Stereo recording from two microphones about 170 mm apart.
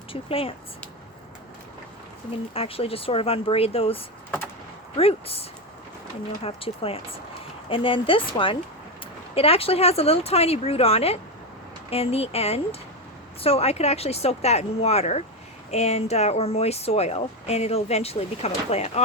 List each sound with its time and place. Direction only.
0.1 s speech: 35° left (ahead or behind)
2.5 s speech: 35° left (ahead or behind)